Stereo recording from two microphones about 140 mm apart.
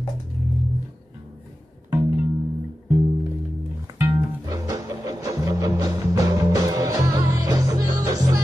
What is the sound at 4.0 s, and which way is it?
Music, 25° right (ahead or behind).